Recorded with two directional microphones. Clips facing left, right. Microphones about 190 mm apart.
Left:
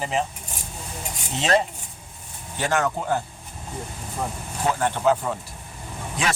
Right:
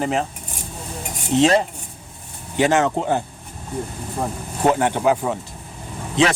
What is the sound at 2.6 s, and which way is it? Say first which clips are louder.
Speech: right 6 dB; 20° right (ahead or behind).